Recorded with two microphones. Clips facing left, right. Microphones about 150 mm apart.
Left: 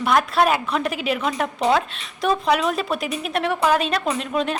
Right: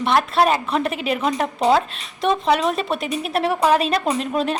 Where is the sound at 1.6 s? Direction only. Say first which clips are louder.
Right 2 dB; 30° right (ahead or behind).